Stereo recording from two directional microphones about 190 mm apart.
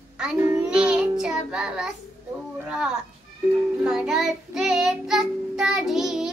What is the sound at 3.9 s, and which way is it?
Child singing, centre (ahead or behind).